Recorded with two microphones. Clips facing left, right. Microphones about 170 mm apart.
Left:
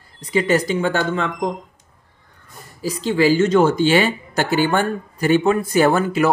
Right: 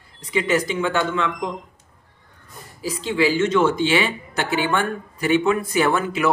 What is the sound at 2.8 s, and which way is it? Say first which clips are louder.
Speech: left 3 dB; 40° left (ahead or behind).